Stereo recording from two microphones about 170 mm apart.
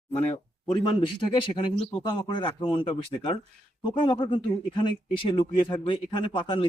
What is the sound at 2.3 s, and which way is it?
Speech, 30° left (ahead or behind).